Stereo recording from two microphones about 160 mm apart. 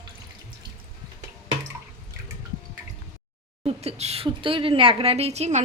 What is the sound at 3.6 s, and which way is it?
Speech, 40° right (ahead or behind).